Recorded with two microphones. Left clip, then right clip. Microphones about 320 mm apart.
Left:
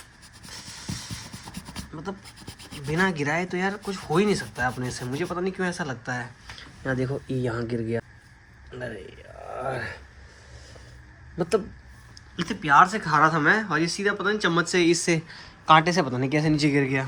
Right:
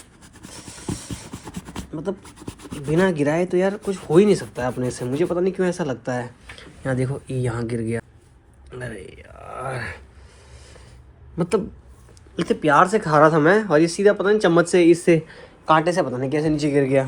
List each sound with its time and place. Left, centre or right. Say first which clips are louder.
0.5 s speech: right 4 dB; centre
6.8 s speech: right 3 dB; right
8.7 s a sound: right 2 dB; right
12.4 s speech: right 2 dB; centre